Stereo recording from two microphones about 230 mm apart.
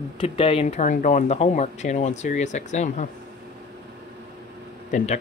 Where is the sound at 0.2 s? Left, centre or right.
Left.